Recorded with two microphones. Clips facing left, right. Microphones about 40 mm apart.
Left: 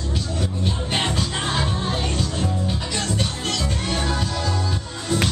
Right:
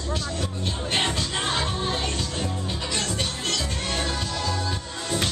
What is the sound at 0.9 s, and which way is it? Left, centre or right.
Music, centre.